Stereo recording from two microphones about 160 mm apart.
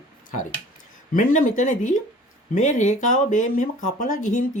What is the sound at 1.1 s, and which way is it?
Speech, 55° left (ahead or behind).